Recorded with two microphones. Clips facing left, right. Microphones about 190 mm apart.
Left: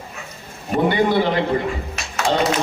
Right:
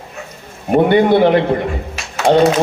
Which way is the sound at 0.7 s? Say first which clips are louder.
Right 7 dB; 55° right (ahead or behind).